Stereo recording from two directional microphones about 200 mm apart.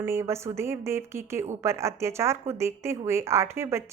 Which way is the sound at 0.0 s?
15° right (ahead or behind).